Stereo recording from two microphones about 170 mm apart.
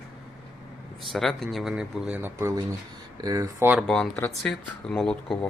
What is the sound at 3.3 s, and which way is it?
Speech, 20° right (ahead or behind).